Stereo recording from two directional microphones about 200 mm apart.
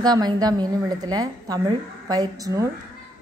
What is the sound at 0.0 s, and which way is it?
A woman's voice, 20° right (ahead or behind).